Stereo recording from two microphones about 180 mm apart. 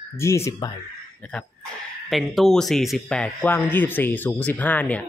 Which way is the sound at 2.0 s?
Centre (ahead or behind).